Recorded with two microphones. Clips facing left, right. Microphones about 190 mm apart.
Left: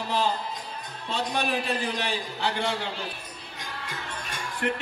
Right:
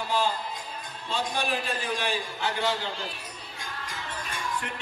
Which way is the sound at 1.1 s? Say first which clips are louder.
Left 2 dB; 65° left (ahead or behind).